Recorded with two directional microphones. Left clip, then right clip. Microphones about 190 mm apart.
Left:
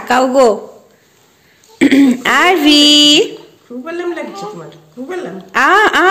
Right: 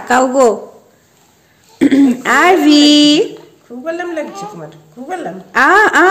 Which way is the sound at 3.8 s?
55° right (ahead or behind).